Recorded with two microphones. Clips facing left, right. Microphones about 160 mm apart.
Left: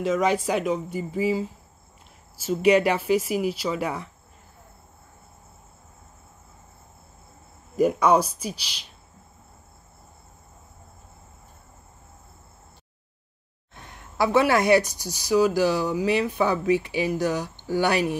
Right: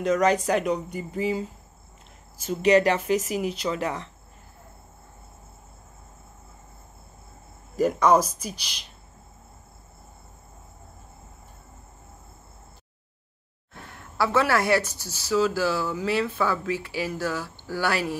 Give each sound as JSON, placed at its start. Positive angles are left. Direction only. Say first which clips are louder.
{"t": 0.0, "sound": "speech", "louder": "right 1 dB", "side_deg": 5}
{"t": 7.8, "sound": "speech", "louder": "left 1 dB", "side_deg": 10}
{"t": 13.8, "sound": "speech", "louder": "left 2 dB", "side_deg": 20}